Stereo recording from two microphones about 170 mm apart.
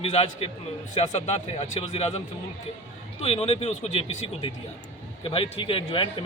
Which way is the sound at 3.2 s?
35° left (ahead or behind).